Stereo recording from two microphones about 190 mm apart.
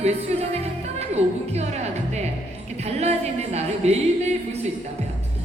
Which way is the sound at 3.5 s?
35° right (ahead or behind).